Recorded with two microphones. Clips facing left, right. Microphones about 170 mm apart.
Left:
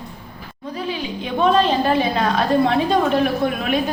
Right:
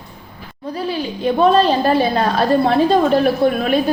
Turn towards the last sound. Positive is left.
turn(degrees=-35)  # may be behind; listen again after turning